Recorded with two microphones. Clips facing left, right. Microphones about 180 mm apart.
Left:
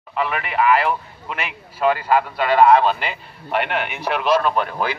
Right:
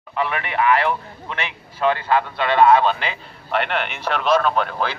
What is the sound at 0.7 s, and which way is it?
A man's voice, 5° left (ahead or behind).